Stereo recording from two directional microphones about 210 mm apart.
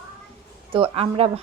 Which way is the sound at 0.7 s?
25° right (ahead or behind).